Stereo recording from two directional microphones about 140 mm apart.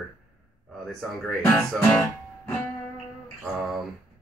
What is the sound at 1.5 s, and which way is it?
Music, 5° left (ahead or behind).